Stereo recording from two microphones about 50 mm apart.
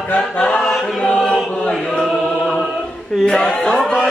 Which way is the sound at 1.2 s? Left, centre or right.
Centre.